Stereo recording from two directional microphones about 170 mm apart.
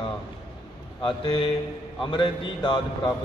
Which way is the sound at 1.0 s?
30° left (ahead or behind).